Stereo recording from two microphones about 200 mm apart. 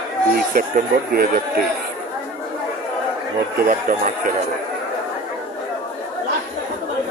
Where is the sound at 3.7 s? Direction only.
45° right (ahead or behind).